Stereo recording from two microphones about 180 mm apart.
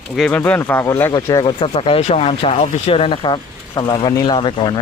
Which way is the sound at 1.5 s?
30° left (ahead or behind).